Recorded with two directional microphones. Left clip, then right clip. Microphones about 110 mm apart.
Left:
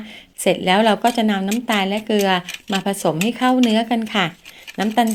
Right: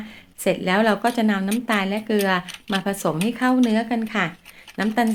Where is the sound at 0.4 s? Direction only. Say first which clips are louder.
Left 4 dB; 30° left (ahead or behind).